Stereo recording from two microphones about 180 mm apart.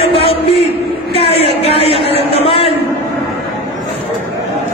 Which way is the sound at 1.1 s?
35° left (ahead or behind).